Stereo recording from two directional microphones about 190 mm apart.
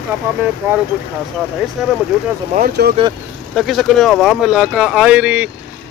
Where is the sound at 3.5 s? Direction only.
Centre (ahead or behind).